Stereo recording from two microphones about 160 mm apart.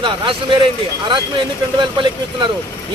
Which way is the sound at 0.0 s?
30° right (ahead or behind).